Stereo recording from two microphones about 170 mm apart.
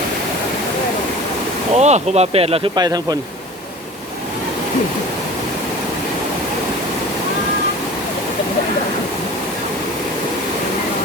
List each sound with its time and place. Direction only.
1.7 s speech: 40° right (ahead or behind)
2.8 s speech: 25° right (ahead or behind)